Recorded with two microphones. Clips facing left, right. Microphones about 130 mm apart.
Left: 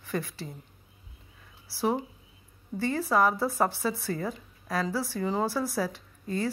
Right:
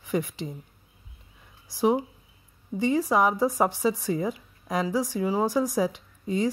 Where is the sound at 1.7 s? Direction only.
15° right (ahead or behind).